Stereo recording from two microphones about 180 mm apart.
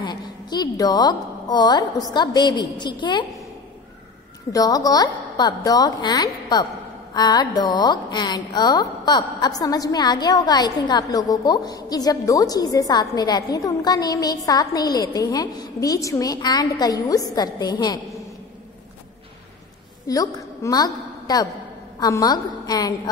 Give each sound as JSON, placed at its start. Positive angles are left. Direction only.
{"t": 0.0, "sound": "a woman's voice", "side_deg": 25}
{"t": 4.5, "sound": "a woman's voice", "side_deg": 20}
{"t": 20.1, "sound": "a woman's voice", "side_deg": 20}